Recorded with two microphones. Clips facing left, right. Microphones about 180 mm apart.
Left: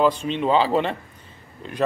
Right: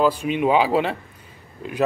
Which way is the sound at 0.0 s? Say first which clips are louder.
Right 1 dB; 10° right (ahead or behind).